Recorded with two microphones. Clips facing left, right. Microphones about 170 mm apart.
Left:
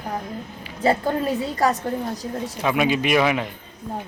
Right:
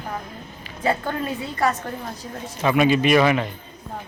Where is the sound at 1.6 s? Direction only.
40° left (ahead or behind).